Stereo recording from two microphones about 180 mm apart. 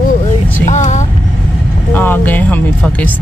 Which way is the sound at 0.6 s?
40° left (ahead or behind).